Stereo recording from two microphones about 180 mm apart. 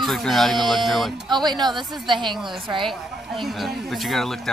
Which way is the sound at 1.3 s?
25° right (ahead or behind).